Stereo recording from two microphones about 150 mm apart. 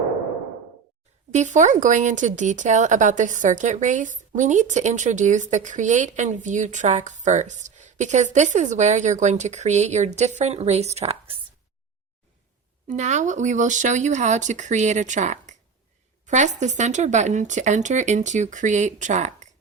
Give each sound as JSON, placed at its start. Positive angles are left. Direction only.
{"t": 1.3, "sound": "speech", "side_deg": -55}
{"t": 12.9, "sound": "speech", "side_deg": -50}